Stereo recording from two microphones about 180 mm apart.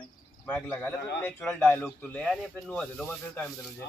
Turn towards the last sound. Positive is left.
turn(degrees=5)  # may be behind; listen again after turning